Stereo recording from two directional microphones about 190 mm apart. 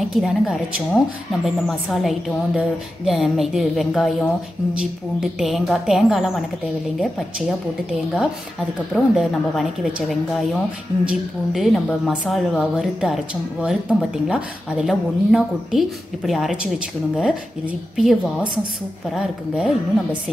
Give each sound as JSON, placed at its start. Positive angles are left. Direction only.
{"t": 0.1, "sound": "a woman's voice", "side_deg": 0}
{"t": 8.9, "sound": "a woman's voice", "side_deg": 0}